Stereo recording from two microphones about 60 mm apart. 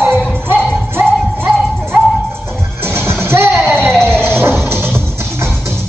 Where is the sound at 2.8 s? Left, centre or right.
Right.